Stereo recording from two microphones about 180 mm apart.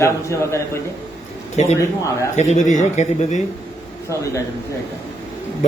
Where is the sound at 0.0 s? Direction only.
15° left (ahead or behind).